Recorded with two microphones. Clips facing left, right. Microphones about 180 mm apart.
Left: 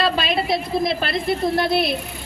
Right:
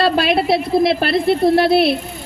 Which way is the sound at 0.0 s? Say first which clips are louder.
Right 6 dB; 65° right (ahead or behind).